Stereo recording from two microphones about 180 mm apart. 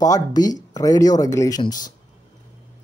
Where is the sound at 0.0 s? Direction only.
20° left (ahead or behind).